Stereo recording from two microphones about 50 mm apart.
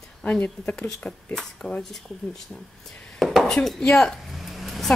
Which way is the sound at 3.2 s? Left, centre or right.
Centre.